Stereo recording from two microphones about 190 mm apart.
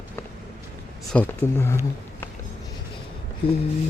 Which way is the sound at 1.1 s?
10° left (ahead or behind).